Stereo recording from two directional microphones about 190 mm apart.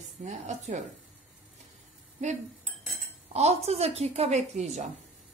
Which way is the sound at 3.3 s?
35° right (ahead or behind).